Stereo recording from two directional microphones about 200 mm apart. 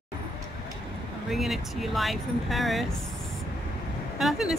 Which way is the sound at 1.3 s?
Centre (ahead or behind).